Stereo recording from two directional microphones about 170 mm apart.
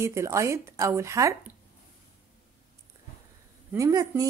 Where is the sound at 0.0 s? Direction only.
15° right (ahead or behind).